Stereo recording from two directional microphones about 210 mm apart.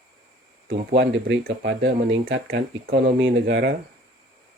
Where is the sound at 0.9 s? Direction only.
50° right (ahead or behind).